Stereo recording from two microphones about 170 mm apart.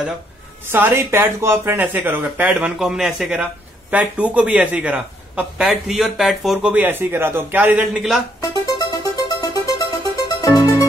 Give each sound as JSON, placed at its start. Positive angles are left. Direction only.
{"t": 0.7, "sound": "a man's voice", "side_deg": -15}
{"t": 8.4, "sound": "music", "side_deg": 20}